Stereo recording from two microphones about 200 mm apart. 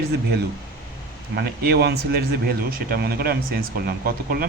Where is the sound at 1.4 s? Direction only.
55° right (ahead or behind).